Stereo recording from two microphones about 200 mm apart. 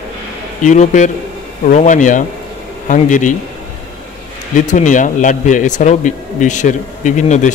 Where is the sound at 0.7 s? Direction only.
40° left (ahead or behind).